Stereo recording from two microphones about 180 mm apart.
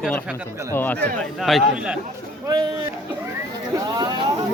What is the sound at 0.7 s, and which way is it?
Speech, 10° left (ahead or behind).